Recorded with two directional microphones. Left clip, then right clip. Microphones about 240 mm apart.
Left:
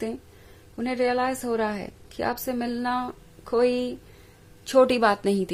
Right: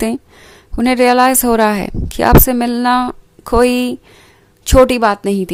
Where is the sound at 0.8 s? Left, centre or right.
Right.